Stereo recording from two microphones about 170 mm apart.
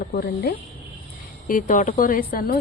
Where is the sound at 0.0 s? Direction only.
60° left (ahead or behind).